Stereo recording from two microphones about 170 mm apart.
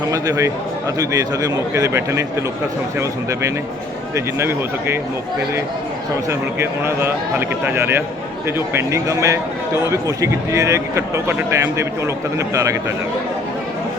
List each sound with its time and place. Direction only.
0.1 s a man's voice: 20° right (ahead or behind)
6.6 s a man's voice: 15° right (ahead or behind)